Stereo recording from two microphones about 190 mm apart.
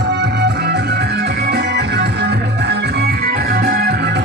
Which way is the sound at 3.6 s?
55° right (ahead or behind).